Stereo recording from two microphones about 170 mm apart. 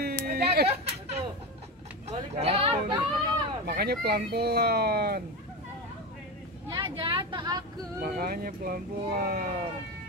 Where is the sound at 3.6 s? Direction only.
65° right (ahead or behind).